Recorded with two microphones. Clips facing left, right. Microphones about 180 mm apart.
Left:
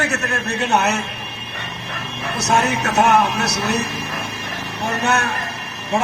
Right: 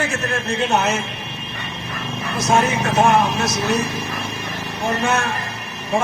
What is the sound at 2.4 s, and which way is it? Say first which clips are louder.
Speech: right 1 dB; 75° left (ahead or behind).